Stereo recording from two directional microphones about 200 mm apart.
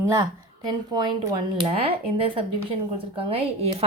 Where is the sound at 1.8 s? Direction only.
25° right (ahead or behind).